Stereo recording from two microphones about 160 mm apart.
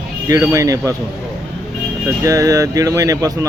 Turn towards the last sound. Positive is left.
turn(degrees=-20)  # may be behind; listen again after turning